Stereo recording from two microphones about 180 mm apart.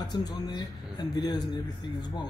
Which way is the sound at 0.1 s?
20° left (ahead or behind).